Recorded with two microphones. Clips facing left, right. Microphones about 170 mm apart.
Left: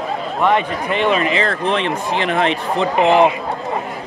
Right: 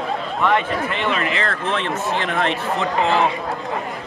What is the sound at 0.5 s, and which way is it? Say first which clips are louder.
Speech: left 3 dB; 15° left (ahead or behind).